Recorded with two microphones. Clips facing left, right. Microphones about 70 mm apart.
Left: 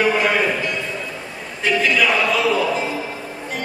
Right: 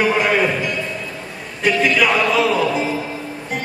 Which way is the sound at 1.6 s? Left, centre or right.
Centre.